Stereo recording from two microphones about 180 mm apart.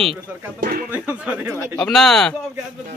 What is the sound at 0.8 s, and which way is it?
Speech, 10° right (ahead or behind).